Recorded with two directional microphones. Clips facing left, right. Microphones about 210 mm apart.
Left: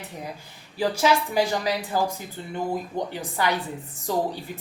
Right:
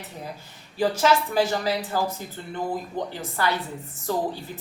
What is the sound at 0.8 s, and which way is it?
A woman's voice, 10° left (ahead or behind).